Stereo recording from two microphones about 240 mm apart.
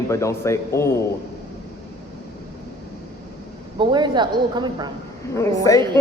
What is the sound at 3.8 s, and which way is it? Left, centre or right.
A woman's voice, centre.